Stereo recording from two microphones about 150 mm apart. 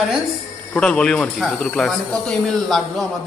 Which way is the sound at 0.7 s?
5° left (ahead or behind).